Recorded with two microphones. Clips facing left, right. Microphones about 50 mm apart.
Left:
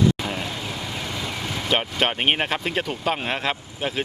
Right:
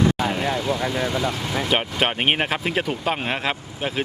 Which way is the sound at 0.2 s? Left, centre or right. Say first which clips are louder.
Right 5 dB; centre.